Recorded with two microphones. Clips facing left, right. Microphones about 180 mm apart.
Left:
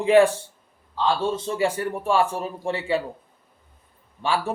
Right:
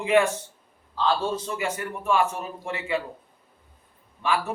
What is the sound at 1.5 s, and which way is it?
A man's voice, 30° left (ahead or behind).